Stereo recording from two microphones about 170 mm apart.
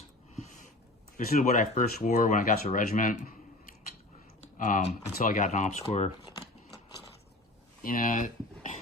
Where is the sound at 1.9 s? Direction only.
60° left (ahead or behind).